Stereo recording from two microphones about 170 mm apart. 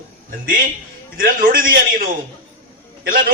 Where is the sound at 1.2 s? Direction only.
55° right (ahead or behind).